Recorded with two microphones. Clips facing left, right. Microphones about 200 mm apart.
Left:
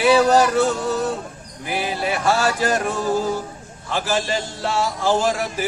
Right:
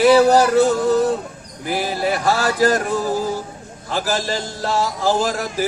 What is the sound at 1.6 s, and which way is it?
Speech, 40° right (ahead or behind).